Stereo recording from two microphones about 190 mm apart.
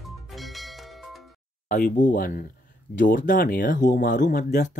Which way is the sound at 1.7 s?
40° left (ahead or behind).